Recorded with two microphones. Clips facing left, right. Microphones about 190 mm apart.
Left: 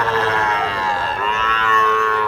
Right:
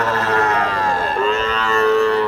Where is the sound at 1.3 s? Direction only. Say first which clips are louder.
Right 3 dB; 30° right (ahead or behind).